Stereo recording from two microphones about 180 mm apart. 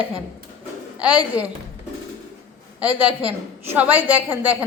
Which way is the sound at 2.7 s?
10° right (ahead or behind).